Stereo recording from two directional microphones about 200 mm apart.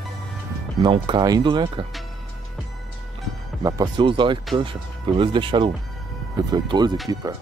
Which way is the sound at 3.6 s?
15° right (ahead or behind).